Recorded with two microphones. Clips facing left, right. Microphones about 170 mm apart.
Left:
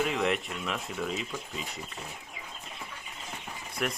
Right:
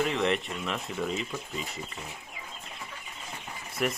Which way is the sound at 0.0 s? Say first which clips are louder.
Right 1 dB; 5° left (ahead or behind).